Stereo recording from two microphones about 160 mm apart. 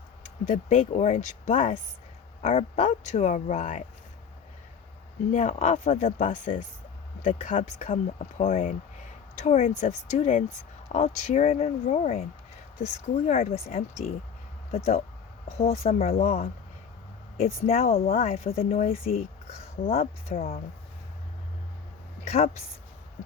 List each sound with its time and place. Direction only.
0.4 s speech: 50° left (ahead or behind)
5.3 s speech: 50° left (ahead or behind)
18.1 s speech: 55° left (ahead or behind)
18.4 s speech: 40° left (ahead or behind)